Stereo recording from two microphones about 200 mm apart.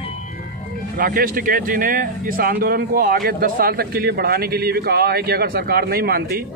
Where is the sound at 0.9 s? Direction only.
45° right (ahead or behind).